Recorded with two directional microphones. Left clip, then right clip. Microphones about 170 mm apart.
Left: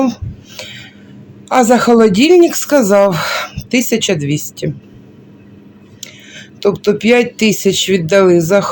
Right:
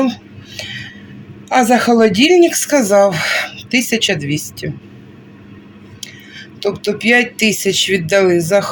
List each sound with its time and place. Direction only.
0.5 s a sound: 15° left (ahead or behind)
1.5 s speech: 15° left (ahead or behind)
6.0 s speech: 20° left (ahead or behind)